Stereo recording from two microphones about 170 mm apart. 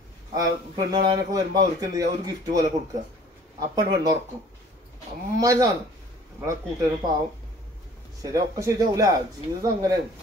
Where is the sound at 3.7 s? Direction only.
25° right (ahead or behind).